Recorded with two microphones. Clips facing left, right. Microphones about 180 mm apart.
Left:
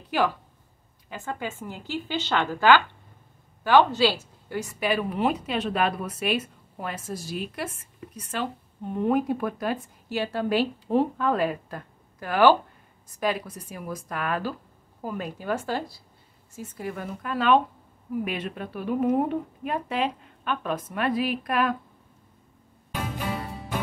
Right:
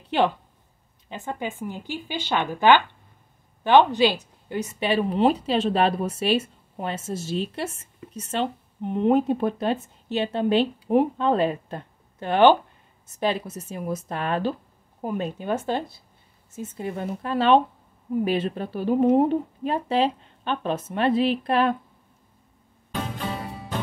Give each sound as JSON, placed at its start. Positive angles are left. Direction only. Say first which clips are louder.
{"t": 0.1, "sound": "speech", "louder": "right 3 dB", "side_deg": -25}